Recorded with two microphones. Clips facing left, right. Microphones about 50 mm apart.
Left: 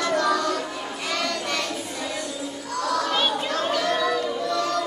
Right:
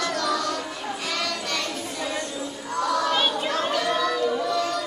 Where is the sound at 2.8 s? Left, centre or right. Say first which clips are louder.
Right 1 dB; centre.